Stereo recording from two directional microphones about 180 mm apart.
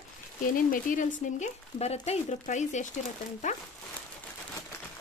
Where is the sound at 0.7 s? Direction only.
45° left (ahead or behind).